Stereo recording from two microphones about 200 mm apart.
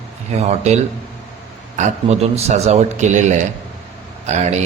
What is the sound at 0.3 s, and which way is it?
A man's voice, 35° right (ahead or behind).